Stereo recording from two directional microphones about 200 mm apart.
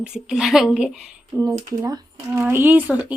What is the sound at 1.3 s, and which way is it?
Speech, 15° right (ahead or behind).